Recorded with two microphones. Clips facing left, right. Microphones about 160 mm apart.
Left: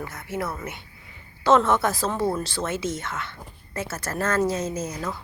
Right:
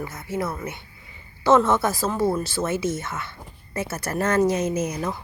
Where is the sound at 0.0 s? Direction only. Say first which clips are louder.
Right 2 dB; 5° right (ahead or behind).